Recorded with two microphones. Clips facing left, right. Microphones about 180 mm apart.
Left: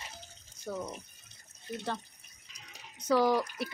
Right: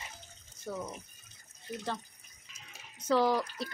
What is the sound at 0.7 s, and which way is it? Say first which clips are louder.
Speech: left 1 dB; 5° left (ahead or behind).